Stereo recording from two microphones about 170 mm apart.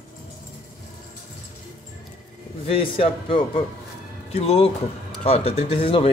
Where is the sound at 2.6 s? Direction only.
35° left (ahead or behind).